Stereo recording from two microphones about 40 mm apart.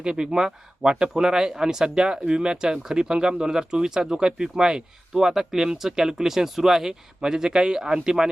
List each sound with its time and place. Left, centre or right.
0.0 s speech: centre